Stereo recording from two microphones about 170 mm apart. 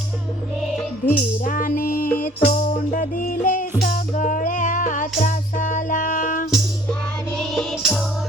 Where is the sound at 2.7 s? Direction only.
50° left (ahead or behind).